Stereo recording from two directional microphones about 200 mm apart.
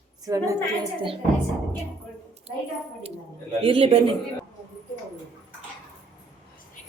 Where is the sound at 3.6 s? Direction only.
30° right (ahead or behind).